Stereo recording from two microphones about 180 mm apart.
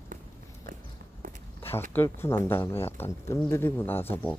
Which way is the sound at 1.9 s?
15° left (ahead or behind).